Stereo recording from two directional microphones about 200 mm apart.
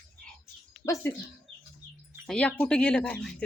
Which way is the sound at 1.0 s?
10° left (ahead or behind).